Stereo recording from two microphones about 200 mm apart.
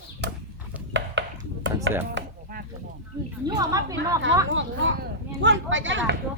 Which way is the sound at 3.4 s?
15° right (ahead or behind).